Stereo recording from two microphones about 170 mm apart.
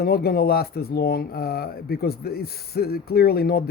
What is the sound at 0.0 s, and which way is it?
Speech, 65° left (ahead or behind).